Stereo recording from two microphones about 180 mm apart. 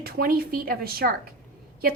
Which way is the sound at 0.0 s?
55° right (ahead or behind).